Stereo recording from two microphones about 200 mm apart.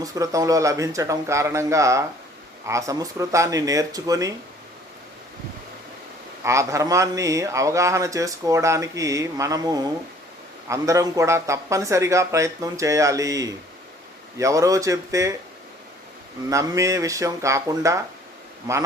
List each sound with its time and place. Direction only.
0.0 s speech: 15° right (ahead or behind)
6.4 s speech: 15° right (ahead or behind)
16.5 s speech: 15° right (ahead or behind)